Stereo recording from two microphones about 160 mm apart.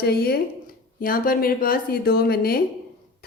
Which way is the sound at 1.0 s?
60° left (ahead or behind).